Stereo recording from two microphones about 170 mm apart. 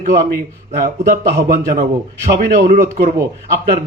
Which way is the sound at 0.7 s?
60° right (ahead or behind).